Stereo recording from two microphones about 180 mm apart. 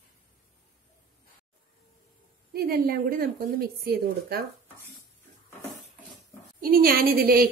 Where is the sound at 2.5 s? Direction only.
55° right (ahead or behind).